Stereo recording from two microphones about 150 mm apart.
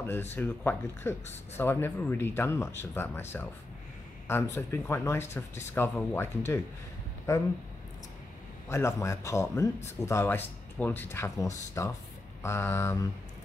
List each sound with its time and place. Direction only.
0.4 s speech: 15° left (ahead or behind)
4.3 s speech: 15° left (ahead or behind)
8.6 s speech: 20° left (ahead or behind)